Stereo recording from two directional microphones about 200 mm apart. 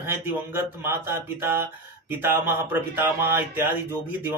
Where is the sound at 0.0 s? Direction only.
10° right (ahead or behind).